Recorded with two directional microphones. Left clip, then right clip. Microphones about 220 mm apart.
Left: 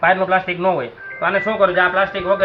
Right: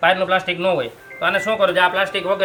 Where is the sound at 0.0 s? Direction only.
65° right (ahead or behind).